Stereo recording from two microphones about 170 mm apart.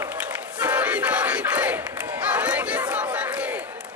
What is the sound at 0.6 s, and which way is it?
Battle cry, 10° right (ahead or behind).